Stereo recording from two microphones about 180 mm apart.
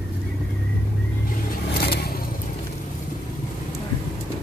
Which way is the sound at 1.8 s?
60° left (ahead or behind).